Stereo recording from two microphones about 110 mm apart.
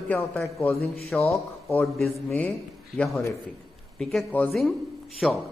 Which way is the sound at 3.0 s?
10° left (ahead or behind).